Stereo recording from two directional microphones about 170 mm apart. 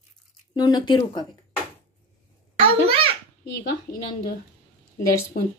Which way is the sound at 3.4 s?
65° left (ahead or behind).